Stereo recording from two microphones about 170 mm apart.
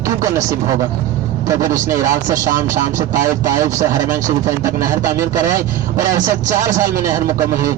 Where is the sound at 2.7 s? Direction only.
50° right (ahead or behind).